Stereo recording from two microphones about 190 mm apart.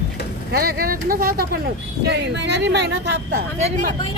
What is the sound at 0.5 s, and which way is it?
Speech, 50° right (ahead or behind).